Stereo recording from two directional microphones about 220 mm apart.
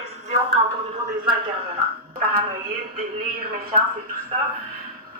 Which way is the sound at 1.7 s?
40° right (ahead or behind).